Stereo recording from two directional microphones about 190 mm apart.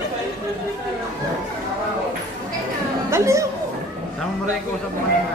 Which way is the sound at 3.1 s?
15° right (ahead or behind).